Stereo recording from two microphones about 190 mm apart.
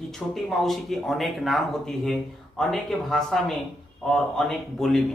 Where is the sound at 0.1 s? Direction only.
Centre (ahead or behind).